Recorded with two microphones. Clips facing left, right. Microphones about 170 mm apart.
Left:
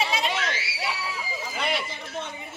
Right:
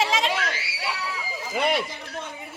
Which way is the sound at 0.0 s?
90° right.